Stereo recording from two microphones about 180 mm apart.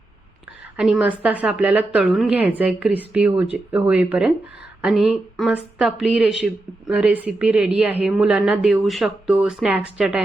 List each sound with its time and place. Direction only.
0.8 s a woman's voice: 5° right (ahead or behind)